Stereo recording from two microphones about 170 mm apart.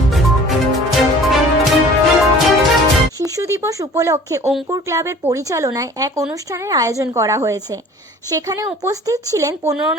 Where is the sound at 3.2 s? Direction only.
20° right (ahead or behind).